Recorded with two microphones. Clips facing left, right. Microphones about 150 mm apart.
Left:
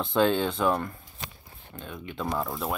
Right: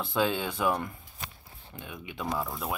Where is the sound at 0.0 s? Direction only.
5° right (ahead or behind).